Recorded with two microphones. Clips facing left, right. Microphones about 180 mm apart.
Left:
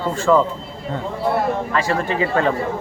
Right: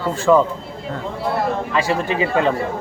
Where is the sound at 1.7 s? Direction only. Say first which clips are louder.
Right 1 dB; 15° right (ahead or behind).